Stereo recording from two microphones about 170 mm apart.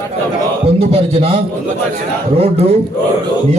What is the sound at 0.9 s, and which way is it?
Speech, 35° right (ahead or behind).